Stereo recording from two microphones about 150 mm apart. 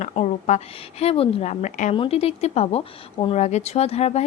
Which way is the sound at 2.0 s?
40° left (ahead or behind).